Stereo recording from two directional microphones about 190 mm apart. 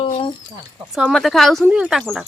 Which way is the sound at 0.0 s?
25° left (ahead or behind).